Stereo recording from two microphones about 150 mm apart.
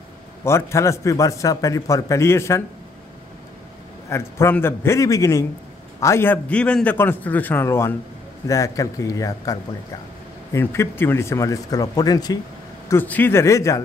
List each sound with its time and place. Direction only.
0.4 s a man's voice: 20° left (ahead or behind)
4.1 s a man's voice: 15° left (ahead or behind)
12.8 s a man's voice: 15° left (ahead or behind)